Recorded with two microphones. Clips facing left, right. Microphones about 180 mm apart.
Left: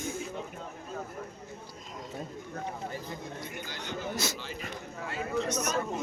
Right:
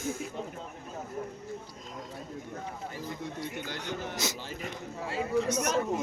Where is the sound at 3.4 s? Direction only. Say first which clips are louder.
Right 4 dB; 60° right (ahead or behind).